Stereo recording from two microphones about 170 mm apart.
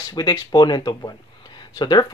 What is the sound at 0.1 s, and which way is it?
Speech, 25° left (ahead or behind).